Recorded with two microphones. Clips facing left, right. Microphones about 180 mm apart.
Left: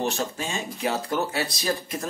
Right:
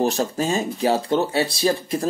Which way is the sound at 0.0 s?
40° right (ahead or behind).